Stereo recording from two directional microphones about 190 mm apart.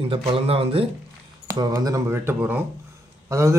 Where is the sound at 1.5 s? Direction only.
20° right (ahead or behind).